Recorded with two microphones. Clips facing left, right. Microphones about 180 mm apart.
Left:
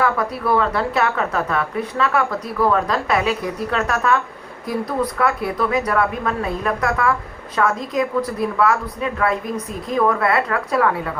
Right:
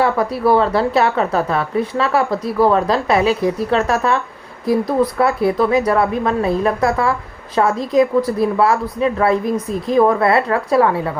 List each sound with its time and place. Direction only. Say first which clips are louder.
0.0 s speech: right 4 dB; 30° right (ahead or behind)